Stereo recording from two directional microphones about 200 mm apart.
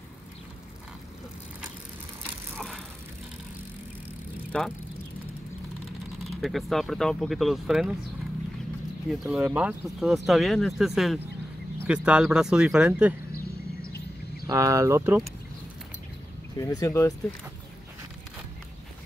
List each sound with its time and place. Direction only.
2.5 s bicycle: centre (ahead or behind)
4.5 s speech: 5° left (ahead or behind)
6.4 s speech: centre (ahead or behind)
9.1 s speech: 5° right (ahead or behind)
13.8 s a sound: 50° left (ahead or behind)
14.5 s speech: 15° right (ahead or behind)
16.5 s speech: 15° left (ahead or behind)